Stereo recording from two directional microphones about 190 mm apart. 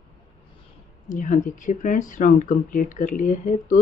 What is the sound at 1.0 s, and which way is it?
Speech, 45° left (ahead or behind).